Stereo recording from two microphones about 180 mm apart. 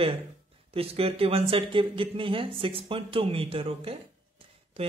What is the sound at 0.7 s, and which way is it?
Speech, 30° right (ahead or behind).